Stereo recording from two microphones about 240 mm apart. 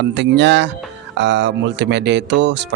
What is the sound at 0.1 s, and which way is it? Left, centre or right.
Speech, right.